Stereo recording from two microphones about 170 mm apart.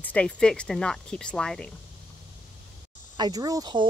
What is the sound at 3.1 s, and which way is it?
Speech, 25° right (ahead or behind).